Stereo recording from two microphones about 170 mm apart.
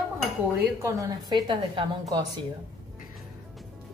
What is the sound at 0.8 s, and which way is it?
A woman's voice, 20° right (ahead or behind).